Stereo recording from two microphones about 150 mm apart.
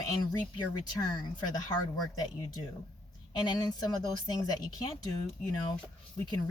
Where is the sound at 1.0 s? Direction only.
30° left (ahead or behind).